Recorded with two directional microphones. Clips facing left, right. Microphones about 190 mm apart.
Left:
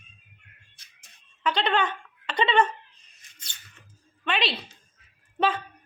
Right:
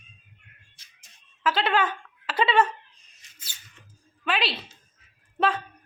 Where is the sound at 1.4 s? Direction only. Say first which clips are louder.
Right 1 dB; 5° right (ahead or behind).